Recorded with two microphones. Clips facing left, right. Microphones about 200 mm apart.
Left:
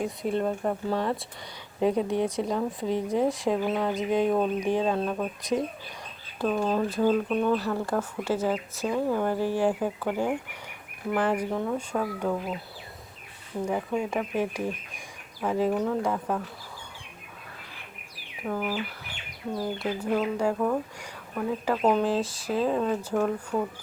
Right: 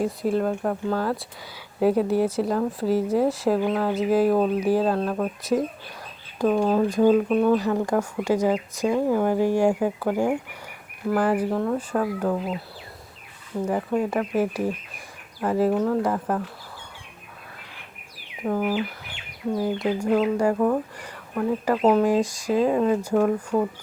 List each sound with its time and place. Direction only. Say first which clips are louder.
0.0 s speech: right 4 dB; centre (ahead or behind)
6.4 s speech: right 5 dB; 15° right (ahead or behind)
13.7 s speech: right 4 dB; centre (ahead or behind)
18.4 s speech: right 6 dB; 15° right (ahead or behind)